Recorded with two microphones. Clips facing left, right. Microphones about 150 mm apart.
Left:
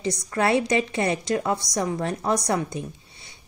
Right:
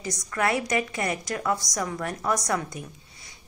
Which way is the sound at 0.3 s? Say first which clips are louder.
Left 4 dB; 25° left (ahead or behind).